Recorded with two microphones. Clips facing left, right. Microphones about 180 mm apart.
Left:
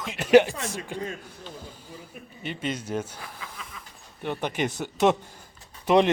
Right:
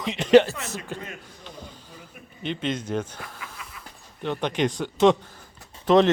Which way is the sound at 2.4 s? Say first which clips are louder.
Right 3 dB; 10° left (ahead or behind).